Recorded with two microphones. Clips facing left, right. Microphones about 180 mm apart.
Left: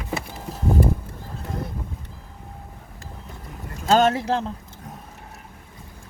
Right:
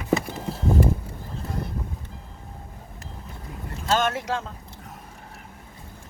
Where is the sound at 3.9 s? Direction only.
35° left (ahead or behind).